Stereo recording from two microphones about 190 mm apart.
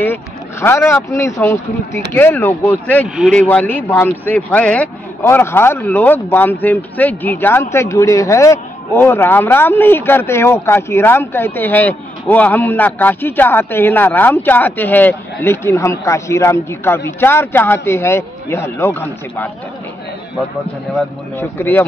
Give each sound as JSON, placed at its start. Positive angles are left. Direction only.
{"t": 0.0, "sound": "speech", "side_deg": 10}
{"t": 21.4, "sound": "speech", "side_deg": 10}